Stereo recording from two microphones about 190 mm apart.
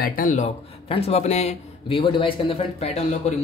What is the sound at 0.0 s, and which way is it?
Speech, 45° left (ahead or behind).